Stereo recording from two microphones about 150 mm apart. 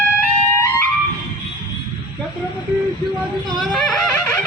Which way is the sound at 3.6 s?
5° left (ahead or behind).